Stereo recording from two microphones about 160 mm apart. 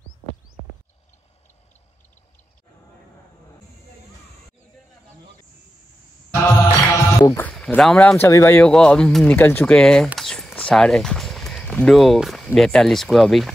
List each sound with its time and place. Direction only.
6.4 s music: 20° left (ahead or behind)
7.5 s speech: centre (ahead or behind)
8.6 s speech: 5° left (ahead or behind)
10.1 s a sound: 5° left (ahead or behind)
12.5 s speech: 5° left (ahead or behind)